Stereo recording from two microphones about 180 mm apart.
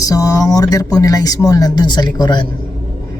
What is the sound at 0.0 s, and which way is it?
A woman's voice, 20° left (ahead or behind).